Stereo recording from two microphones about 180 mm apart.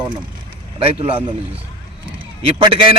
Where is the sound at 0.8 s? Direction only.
30° right (ahead or behind).